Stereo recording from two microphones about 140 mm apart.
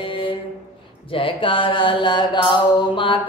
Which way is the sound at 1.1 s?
40° left (ahead or behind).